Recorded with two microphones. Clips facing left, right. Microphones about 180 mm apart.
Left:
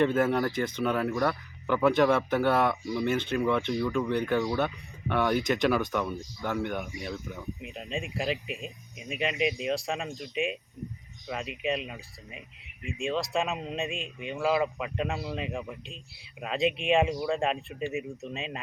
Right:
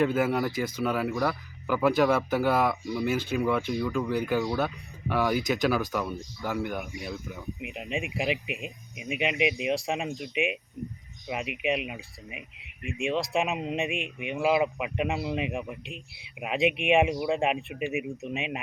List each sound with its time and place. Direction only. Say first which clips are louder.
0.0 s speech: even; 5° right (ahead or behind)
7.6 s speech: right 4 dB; 15° right (ahead or behind)